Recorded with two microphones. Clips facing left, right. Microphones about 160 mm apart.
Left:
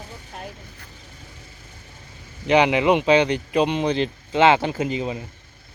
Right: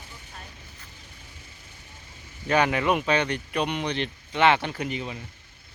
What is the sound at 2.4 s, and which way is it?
Speech, 20° left (ahead or behind).